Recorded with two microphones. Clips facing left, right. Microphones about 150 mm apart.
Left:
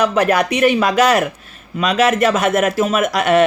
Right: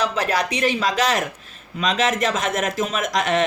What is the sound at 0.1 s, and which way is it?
Speech, 55° left (ahead or behind).